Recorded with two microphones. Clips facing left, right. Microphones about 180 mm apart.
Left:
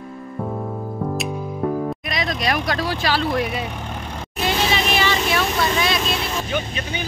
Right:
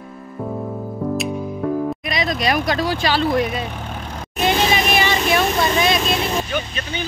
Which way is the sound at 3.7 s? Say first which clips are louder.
Even; 5° right (ahead or behind).